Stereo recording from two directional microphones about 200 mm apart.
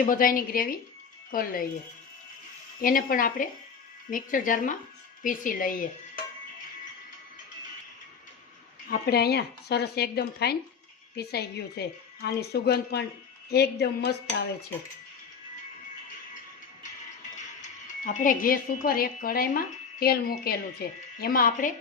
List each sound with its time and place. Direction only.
0.0 s a woman's voice: 45° left (ahead or behind)
2.8 s a woman's voice: 45° left (ahead or behind)
8.9 s a woman's voice: 50° left (ahead or behind)
13.5 s a sound: 55° left (ahead or behind)
17.6 s a woman's voice: 35° left (ahead or behind)